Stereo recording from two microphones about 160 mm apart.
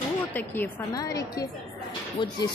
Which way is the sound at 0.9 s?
20° left (ahead or behind).